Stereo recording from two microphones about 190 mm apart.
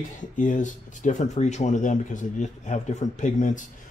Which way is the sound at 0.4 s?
40° left (ahead or behind).